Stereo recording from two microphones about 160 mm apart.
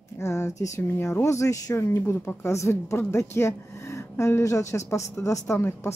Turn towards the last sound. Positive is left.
turn(degrees=15)  # may be behind; listen again after turning